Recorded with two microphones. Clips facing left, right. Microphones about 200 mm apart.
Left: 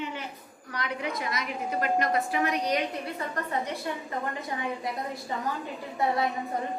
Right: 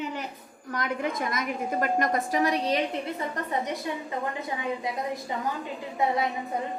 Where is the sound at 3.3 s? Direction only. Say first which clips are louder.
Right 1 dB; 20° right (ahead or behind).